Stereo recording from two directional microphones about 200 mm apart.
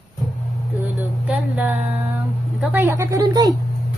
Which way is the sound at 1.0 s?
5° right (ahead or behind).